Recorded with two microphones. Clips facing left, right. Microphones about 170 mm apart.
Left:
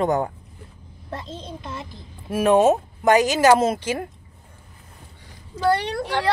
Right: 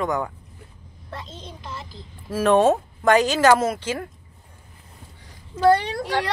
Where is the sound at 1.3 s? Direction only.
25° left (ahead or behind).